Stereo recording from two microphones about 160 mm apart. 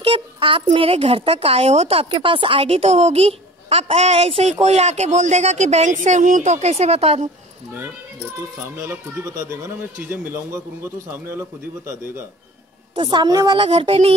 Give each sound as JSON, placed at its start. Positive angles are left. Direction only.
{"t": 0.0, "sound": "a woman's voice", "side_deg": -30}
{"t": 8.7, "sound": "speech", "side_deg": -15}
{"t": 12.9, "sound": "a woman's voice", "side_deg": -30}
{"t": 13.7, "sound": "a woman's voice", "side_deg": -40}